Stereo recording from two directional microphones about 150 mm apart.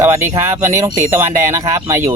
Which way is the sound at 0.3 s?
20° right (ahead or behind).